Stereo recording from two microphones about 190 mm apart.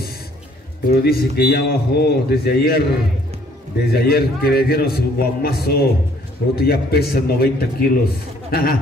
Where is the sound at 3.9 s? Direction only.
55° left (ahead or behind).